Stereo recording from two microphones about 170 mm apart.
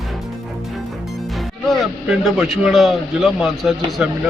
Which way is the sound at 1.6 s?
5° right (ahead or behind).